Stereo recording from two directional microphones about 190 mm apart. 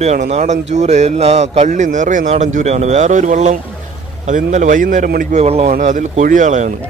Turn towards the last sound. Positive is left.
turn(degrees=-40)  # may be behind; listen again after turning